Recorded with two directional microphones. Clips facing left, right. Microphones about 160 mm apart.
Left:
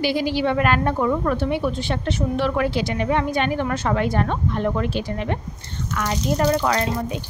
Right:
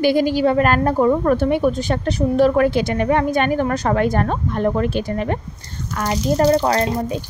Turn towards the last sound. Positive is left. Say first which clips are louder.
# right 4 dB
turn(degrees=-35)  # may be behind; listen again after turning